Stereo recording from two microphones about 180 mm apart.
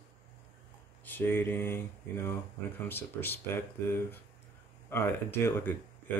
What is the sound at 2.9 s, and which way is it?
Speech, 10° left (ahead or behind).